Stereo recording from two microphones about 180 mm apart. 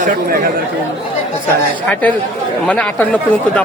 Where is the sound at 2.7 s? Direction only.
5° left (ahead or behind).